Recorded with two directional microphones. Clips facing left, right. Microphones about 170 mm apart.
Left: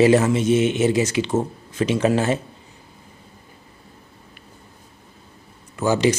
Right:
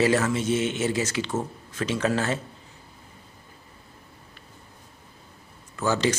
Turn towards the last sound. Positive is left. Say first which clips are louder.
# left 5 dB
turn(degrees=15)  # may be behind; listen again after turning